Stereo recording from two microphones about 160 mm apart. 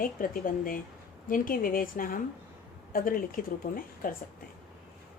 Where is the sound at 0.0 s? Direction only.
60° left (ahead or behind).